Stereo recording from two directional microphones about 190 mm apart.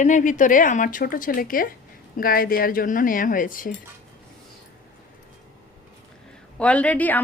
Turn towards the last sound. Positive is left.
turn(degrees=10)  # may be behind; listen again after turning